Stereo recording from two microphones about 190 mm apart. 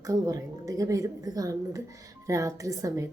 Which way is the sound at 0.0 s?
15° right (ahead or behind).